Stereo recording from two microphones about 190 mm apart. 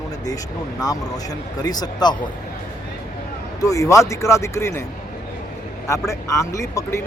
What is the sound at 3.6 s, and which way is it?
Speech, 15° left (ahead or behind).